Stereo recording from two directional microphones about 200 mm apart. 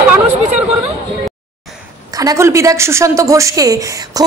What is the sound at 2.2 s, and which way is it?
A woman's voice, 15° right (ahead or behind).